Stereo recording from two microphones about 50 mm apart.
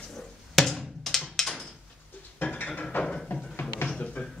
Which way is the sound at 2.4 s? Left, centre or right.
Left.